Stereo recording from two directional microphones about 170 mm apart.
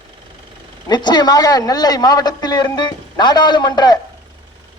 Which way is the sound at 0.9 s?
25° left (ahead or behind).